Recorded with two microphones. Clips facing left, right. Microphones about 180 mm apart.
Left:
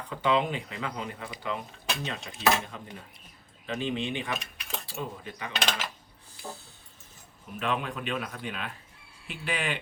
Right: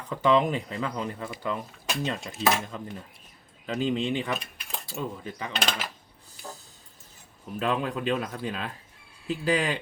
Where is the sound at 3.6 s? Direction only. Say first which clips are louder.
Right 4 dB; 35° right (ahead or behind).